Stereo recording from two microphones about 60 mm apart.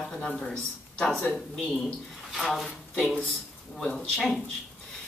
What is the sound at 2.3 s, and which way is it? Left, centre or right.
A woman's voice, centre.